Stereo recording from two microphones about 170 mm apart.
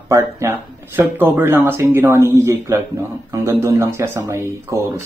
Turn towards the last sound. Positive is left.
turn(degrees=-15)  # may be behind; listen again after turning